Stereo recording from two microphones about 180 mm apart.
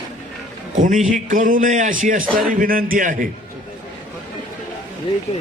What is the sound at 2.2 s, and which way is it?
Speech, centre (ahead or behind).